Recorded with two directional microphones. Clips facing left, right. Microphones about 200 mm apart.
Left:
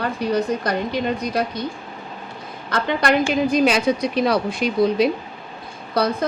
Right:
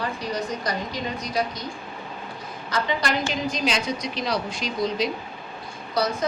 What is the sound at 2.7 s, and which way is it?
A woman's voice, 55° left (ahead or behind).